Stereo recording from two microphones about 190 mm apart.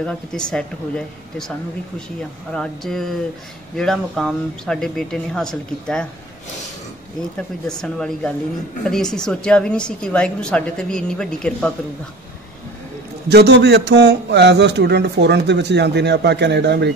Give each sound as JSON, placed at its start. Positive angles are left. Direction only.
{"t": 0.0, "sound": "a woman's voice", "side_deg": 5}
{"t": 2.5, "sound": "a woman's voice", "side_deg": 0}
{"t": 7.6, "sound": "a woman's voice", "side_deg": 5}
{"t": 13.3, "sound": "a man's voice", "side_deg": -60}